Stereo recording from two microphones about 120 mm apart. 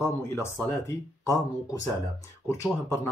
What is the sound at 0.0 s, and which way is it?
Speech, 20° left (ahead or behind).